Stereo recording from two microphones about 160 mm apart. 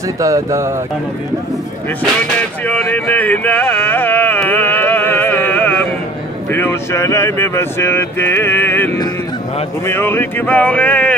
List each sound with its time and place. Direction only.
0.2 s speech: 20° right (ahead or behind)
2.6 s a sound: 10° left (ahead or behind)
6.5 s speech: 15° left (ahead or behind)